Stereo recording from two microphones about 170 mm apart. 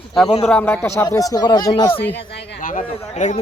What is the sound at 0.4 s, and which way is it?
Speech, 10° left (ahead or behind).